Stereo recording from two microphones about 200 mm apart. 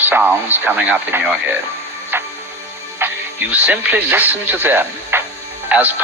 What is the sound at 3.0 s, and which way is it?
Speech, 10° right (ahead or behind).